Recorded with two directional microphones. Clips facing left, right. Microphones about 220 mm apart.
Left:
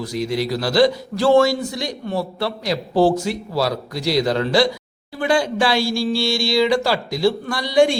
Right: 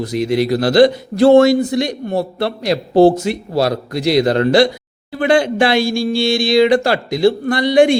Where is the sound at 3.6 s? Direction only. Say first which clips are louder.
Right 6 dB; 55° right (ahead or behind).